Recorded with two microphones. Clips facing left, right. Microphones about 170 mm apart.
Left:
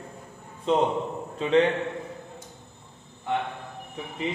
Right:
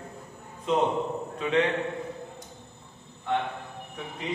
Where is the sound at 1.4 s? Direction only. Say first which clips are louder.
Left 4 dB; 30° left (ahead or behind).